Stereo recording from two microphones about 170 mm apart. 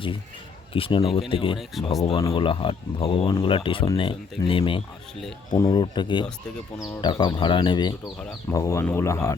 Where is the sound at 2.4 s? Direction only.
30° left (ahead or behind).